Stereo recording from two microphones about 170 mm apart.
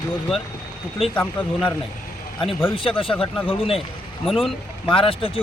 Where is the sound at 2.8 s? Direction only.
30° left (ahead or behind).